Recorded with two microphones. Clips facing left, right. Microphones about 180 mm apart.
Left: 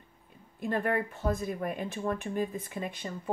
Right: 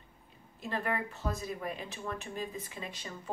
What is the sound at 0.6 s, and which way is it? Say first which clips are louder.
Speech: left 5 dB; 55° left (ahead or behind).